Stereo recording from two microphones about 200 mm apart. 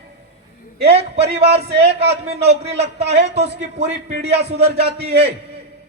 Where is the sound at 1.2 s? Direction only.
55° right (ahead or behind).